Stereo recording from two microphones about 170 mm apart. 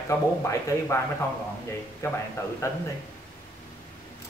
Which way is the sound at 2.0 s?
15° left (ahead or behind).